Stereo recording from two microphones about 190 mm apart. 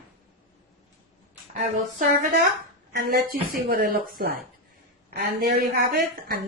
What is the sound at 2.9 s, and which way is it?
A woman's voice, 50° right (ahead or behind).